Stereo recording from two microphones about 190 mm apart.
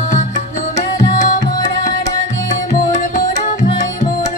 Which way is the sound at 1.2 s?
45° left (ahead or behind).